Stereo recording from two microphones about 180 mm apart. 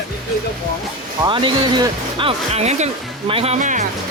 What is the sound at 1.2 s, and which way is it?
Speech, 25° right (ahead or behind).